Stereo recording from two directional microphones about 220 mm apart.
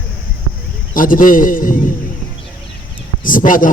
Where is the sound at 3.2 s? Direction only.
40° left (ahead or behind).